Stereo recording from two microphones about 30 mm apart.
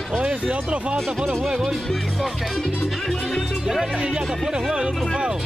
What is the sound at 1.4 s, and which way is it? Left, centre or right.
Speech, centre.